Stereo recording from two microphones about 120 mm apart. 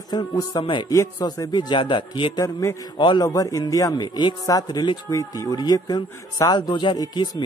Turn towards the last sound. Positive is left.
turn(degrees=40)  # may be behind; listen again after turning